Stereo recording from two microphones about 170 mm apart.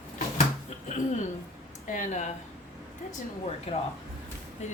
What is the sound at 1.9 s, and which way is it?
Speech, 50° left (ahead or behind).